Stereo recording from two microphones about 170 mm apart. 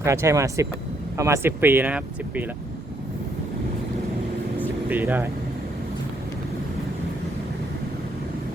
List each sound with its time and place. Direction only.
0.0 s speech: 15° right (ahead or behind)
4.9 s speech: 10° right (ahead or behind)